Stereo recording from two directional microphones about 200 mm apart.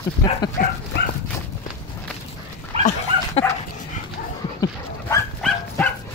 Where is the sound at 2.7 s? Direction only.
30° right (ahead or behind).